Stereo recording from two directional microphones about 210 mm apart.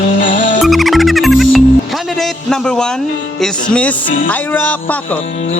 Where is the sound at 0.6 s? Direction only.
Centre (ahead or behind).